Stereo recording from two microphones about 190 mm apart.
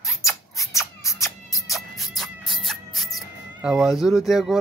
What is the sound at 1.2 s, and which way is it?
Music, centre (ahead or behind).